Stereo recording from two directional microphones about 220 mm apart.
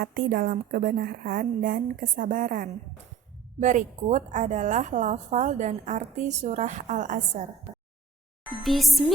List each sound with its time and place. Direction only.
0.0 s a woman's voice: 40° right (ahead or behind)
8.6 s speech: centre (ahead or behind)